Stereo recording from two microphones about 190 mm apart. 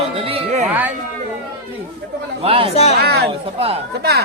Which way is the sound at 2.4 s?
30° right (ahead or behind).